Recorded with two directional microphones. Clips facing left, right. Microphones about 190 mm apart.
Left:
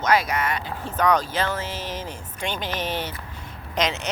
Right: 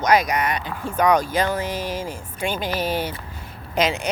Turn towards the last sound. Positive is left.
turn(degrees=-10)  # may be behind; listen again after turning